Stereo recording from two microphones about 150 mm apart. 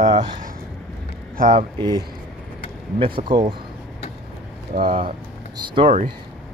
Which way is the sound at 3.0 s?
35° right (ahead or behind).